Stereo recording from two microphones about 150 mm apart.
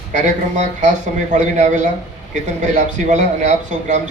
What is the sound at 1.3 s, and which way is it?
A man's voice, 50° right (ahead or behind).